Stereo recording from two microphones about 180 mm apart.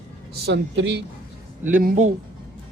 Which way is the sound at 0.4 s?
85° right.